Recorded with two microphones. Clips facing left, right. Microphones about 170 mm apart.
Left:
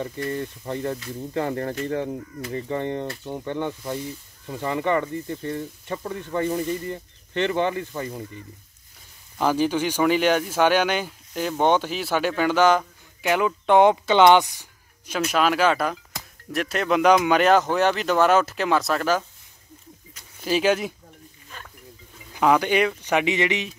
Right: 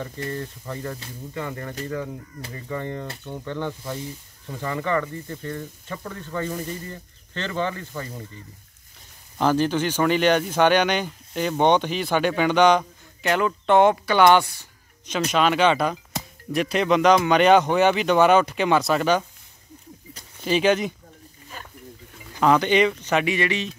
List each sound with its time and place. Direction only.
0.3 s speech: 20° left (ahead or behind)
1.3 s speech: 40° left (ahead or behind)
2.5 s speech: 25° left (ahead or behind)
9.4 s speech: 10° left (ahead or behind)
15.3 s speech: 5° left (ahead or behind)
20.4 s speech: 5° left (ahead or behind)
22.3 s speech: 10° left (ahead or behind)